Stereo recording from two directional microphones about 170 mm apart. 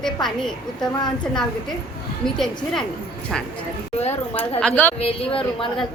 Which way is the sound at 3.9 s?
40° left (ahead or behind).